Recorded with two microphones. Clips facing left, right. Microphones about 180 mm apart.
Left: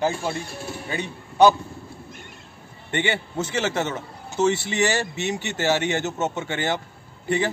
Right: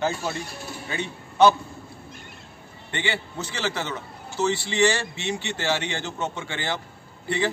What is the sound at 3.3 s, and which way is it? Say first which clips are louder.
A man's voice: left 5 dB; 25° left (ahead or behind).